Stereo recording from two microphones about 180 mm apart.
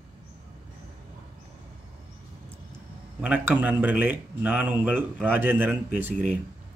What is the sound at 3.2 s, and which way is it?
A man's voice, 10° right (ahead or behind).